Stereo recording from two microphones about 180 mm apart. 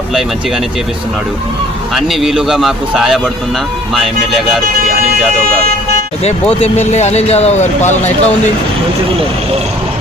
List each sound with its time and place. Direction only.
2.0 s a man's voice: centre (ahead or behind)
6.9 s speech: 40° left (ahead or behind)